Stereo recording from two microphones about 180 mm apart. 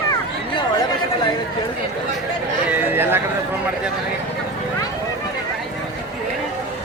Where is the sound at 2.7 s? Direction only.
10° right (ahead or behind).